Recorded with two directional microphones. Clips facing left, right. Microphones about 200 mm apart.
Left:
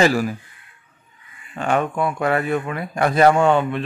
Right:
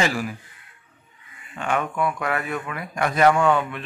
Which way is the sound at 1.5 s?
35° left (ahead or behind).